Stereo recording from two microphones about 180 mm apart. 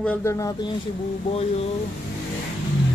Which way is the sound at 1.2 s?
35° left (ahead or behind).